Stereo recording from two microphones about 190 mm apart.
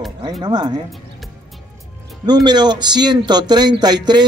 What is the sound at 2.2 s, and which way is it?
Speech, 20° right (ahead or behind).